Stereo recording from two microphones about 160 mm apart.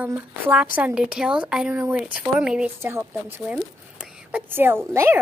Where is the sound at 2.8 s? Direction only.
15° right (ahead or behind).